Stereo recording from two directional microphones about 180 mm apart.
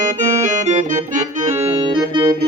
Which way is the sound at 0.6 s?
40° right (ahead or behind).